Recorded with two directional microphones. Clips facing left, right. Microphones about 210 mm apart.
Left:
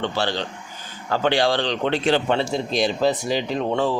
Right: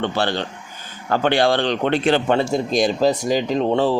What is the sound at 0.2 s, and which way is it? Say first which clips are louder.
Speech: right 3 dB; 55° right (ahead or behind).